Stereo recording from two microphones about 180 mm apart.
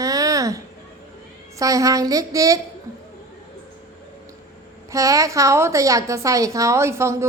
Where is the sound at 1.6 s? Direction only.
20° right (ahead or behind).